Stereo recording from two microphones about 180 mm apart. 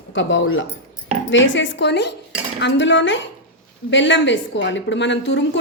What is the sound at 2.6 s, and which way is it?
A woman's voice, 90° left.